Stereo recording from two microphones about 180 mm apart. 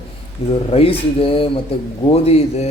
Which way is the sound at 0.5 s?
35° left (ahead or behind).